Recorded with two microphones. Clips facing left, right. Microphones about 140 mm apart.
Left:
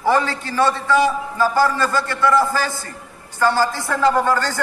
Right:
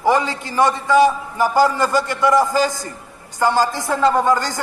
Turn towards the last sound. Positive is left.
turn(degrees=-15)  # may be behind; listen again after turning